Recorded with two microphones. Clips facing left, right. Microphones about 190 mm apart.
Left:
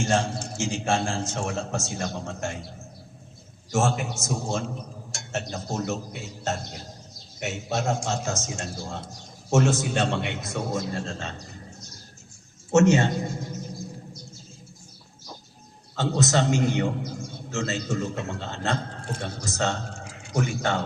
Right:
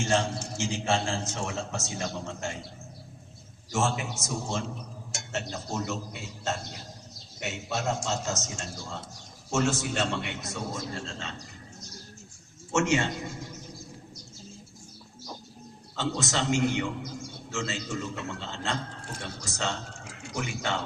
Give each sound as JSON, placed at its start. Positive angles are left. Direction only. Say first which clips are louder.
{"t": 0.0, "sound": "a man's voice", "louder": "left 2 dB", "side_deg": 50}
{"t": 3.7, "sound": "a man's voice", "louder": "left 4 dB", "side_deg": 45}
{"t": 5.7, "sound": "a man's voice", "louder": "left 4 dB", "side_deg": 45}
{"t": 7.3, "sound": "a man's voice", "louder": "left 4 dB", "side_deg": 45}
{"t": 12.7, "sound": "a man's voice", "louder": "left 7 dB", "side_deg": 40}
{"t": 16.0, "sound": "a man's voice", "louder": "left 6 dB", "side_deg": 40}